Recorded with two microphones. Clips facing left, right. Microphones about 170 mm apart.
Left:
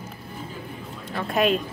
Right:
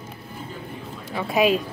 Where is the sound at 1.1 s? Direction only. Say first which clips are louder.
Right 2 dB; 5° right (ahead or behind).